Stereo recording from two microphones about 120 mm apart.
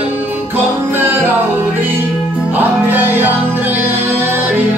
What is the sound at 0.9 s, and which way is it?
Music, 20° right (ahead or behind).